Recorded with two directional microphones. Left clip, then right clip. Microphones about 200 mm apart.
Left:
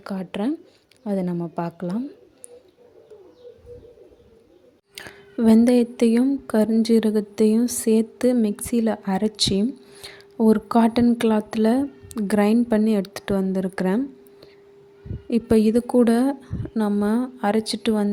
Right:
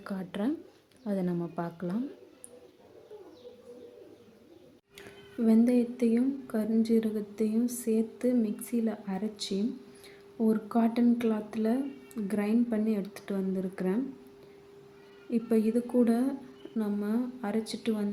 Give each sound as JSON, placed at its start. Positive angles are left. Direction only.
{"t": 0.0, "sound": "speech", "side_deg": 35}
{"t": 4.9, "sound": "speech", "side_deg": 45}
{"t": 15.3, "sound": "speech", "side_deg": 45}